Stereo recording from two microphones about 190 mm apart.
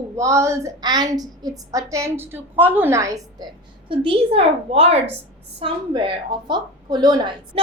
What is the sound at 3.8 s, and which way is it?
A woman's voice, 25° right (ahead or behind).